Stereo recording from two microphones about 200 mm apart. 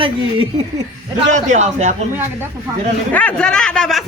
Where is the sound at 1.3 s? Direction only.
35° right (ahead or behind).